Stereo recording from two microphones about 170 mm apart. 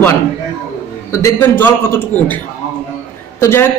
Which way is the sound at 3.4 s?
15° left (ahead or behind).